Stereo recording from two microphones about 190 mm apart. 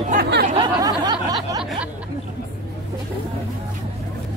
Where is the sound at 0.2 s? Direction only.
55° right (ahead or behind).